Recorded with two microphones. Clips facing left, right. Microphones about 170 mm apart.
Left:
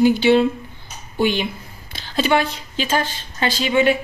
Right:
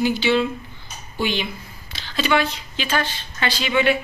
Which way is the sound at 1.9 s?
45° left (ahead or behind).